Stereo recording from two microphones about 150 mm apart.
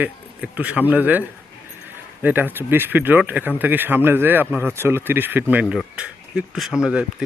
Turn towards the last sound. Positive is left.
turn(degrees=-5)  # may be behind; listen again after turning